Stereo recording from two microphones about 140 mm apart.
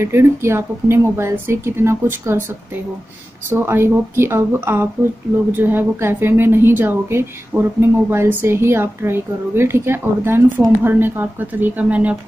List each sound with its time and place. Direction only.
0.0 s a woman's voice: 20° right (ahead or behind)
3.4 s a woman's voice: 15° right (ahead or behind)